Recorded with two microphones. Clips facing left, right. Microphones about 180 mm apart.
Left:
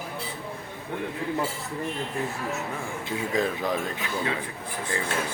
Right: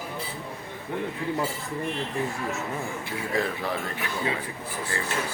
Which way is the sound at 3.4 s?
15° left (ahead or behind).